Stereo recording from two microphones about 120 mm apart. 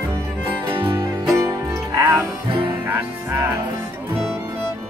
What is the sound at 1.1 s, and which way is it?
Music, 25° right (ahead or behind).